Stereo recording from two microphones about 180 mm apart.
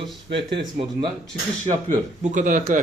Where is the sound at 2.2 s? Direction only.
45° right (ahead or behind).